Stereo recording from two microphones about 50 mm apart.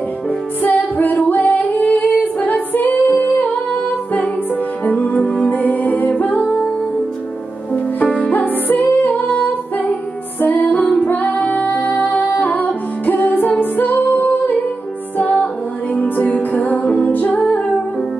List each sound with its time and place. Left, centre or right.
0.6 s music: left
1.9 s a capella: left
5.2 s music: left
5.5 s music: left
8.0 s music: left
11.6 s music: left
11.9 s music: left
15.3 s music: left